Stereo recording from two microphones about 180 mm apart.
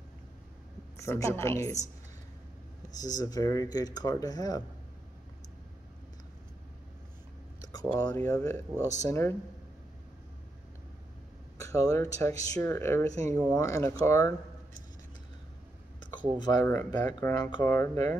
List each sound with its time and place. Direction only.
0.9 s speech: 15° left (ahead or behind)
2.9 s speech: 20° left (ahead or behind)
8.0 s speech: 20° left (ahead or behind)
11.5 s speech: 20° left (ahead or behind)
16.3 s speech: 20° left (ahead or behind)